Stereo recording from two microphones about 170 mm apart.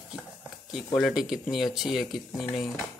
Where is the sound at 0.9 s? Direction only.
Centre (ahead or behind).